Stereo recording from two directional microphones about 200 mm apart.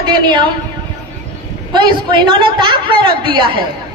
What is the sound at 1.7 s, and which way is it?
A woman's voice, 25° right (ahead or behind).